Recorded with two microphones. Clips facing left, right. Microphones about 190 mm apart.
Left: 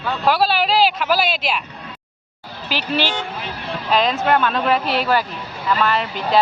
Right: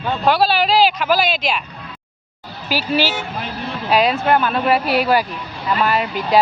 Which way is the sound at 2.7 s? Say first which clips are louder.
Right 3 dB; 10° right (ahead or behind).